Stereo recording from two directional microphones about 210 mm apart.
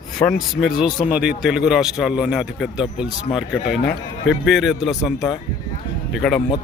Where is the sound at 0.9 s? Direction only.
40° left (ahead or behind).